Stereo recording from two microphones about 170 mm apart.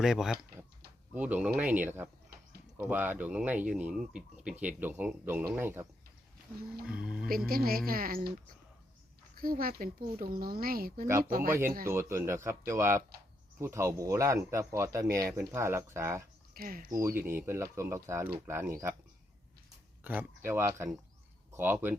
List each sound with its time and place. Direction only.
0.0 s speech: centre (ahead or behind)
6.8 s speech: 5° right (ahead or behind)
7.3 s speech: 60° right (ahead or behind)
9.3 s speech: 60° right (ahead or behind)
11.9 s speech: 15° right (ahead or behind)
16.6 s speech: 60° right (ahead or behind)
16.9 s speech: 15° right (ahead or behind)
20.1 s speech: 10° right (ahead or behind)